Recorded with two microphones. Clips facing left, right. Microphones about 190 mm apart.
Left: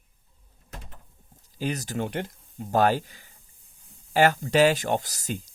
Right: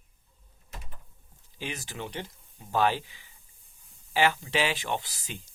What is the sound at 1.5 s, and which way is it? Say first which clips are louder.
Speech: left 8 dB; 40° left (ahead or behind).